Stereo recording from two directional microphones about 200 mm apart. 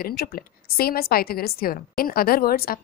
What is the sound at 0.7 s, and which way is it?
A woman's voice, 50° left (ahead or behind).